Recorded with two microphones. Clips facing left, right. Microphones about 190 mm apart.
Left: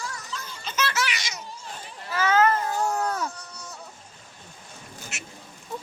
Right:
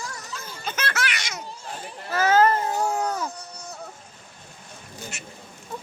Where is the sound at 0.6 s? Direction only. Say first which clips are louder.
Left 1 dB; 55° right (ahead or behind).